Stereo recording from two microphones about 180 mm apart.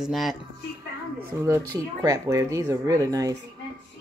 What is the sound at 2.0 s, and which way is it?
Speech, 20° right (ahead or behind).